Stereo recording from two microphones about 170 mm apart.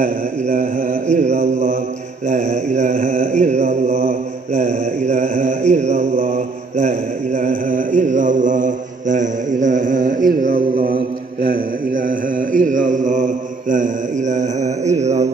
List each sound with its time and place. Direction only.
0.0 s mantra: 55° right (ahead or behind)
1.1 s mantra: 40° right (ahead or behind)